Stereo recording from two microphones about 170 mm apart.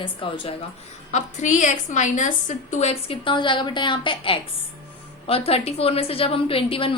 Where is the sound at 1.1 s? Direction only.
45° left (ahead or behind).